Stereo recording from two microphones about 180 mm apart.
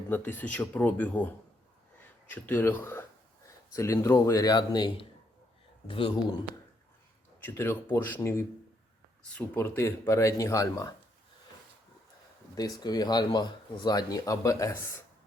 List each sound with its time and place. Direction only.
0.1 s speech: 10° left (ahead or behind)
2.3 s speech: 10° left (ahead or behind); by 5.0 s 25° left (ahead or behind)
7.4 s speech: 10° left (ahead or behind)
12.5 s speech: 20° left (ahead or behind)